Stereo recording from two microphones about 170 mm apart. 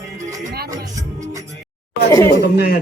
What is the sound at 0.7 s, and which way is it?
Music, 20° right (ahead or behind).